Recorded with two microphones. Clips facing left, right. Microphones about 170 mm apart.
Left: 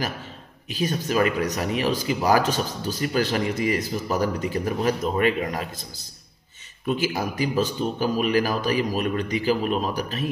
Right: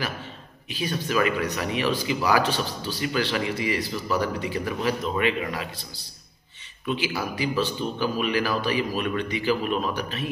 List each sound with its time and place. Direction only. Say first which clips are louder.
0.7 s speech: left 3 dB; 40° left (ahead or behind)